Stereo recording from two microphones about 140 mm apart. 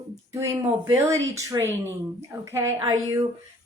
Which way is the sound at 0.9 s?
20° right (ahead or behind).